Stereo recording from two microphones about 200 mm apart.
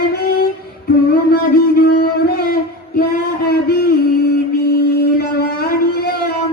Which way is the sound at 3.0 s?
50° left (ahead or behind).